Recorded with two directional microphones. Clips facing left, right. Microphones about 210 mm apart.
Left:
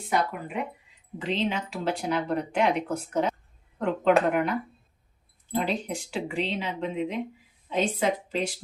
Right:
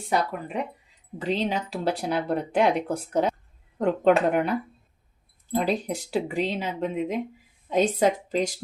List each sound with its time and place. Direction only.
0.1 s speech: 35° right (ahead or behind)